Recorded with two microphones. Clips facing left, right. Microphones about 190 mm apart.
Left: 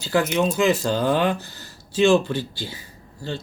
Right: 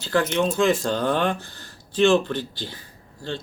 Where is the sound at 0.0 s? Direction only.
10° left (ahead or behind).